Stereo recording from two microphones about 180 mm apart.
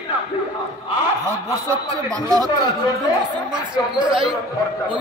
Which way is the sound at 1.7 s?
20° right (ahead or behind).